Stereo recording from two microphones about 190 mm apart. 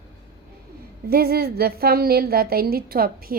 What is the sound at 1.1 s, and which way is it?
A woman's voice, 55° right (ahead or behind).